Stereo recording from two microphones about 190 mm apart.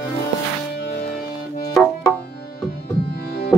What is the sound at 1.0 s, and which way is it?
Music, 50° left (ahead or behind).